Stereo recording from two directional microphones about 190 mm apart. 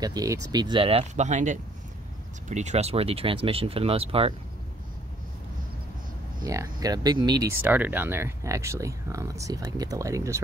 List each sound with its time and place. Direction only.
0.0 s speech: 20° right (ahead or behind)
6.4 s speech: 15° right (ahead or behind)